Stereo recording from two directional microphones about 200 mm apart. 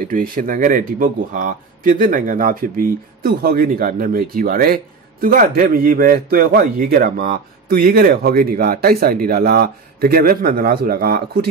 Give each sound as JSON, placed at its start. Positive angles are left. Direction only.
{"t": 0.1, "sound": "speech", "side_deg": -45}